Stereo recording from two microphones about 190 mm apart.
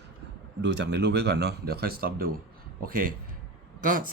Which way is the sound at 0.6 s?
65° right (ahead or behind).